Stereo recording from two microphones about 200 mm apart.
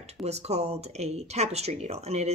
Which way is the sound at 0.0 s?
30° right (ahead or behind).